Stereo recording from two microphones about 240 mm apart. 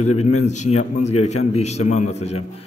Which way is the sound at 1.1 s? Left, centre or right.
Left.